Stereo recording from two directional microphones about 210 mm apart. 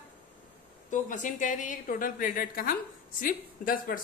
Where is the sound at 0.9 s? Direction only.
35° left (ahead or behind).